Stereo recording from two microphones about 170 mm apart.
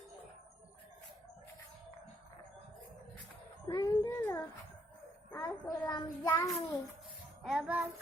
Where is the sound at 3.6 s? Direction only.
20° left (ahead or behind).